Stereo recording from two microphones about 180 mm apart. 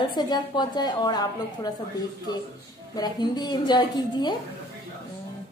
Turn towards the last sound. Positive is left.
turn(degrees=25)  # may be behind; listen again after turning